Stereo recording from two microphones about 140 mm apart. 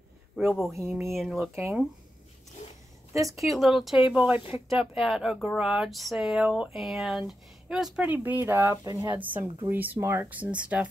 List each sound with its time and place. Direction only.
0.4 s speech: centre (ahead or behind)
1.5 s speech: 15° right (ahead or behind)
3.2 s speech: 25° right (ahead or behind)
3.4 s speech: centre (ahead or behind); by 9.1 s 25° right (ahead or behind)
9.1 s speech: 10° right (ahead or behind)